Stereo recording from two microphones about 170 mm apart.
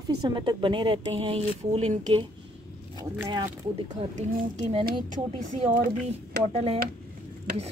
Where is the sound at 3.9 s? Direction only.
45° right (ahead or behind).